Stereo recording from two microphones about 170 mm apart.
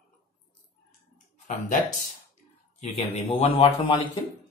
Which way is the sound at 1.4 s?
50° left (ahead or behind).